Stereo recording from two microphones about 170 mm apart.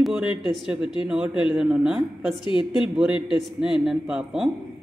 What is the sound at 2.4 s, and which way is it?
Speech, 30° left (ahead or behind).